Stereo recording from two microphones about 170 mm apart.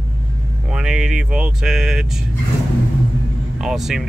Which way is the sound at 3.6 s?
Centre (ahead or behind).